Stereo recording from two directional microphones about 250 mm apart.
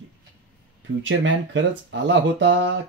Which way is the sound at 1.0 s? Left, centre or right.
Right.